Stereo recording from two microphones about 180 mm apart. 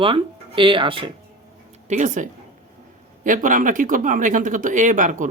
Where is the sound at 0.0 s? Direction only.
30° right (ahead or behind).